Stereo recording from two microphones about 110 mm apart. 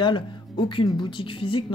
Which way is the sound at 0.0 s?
45° left (ahead or behind).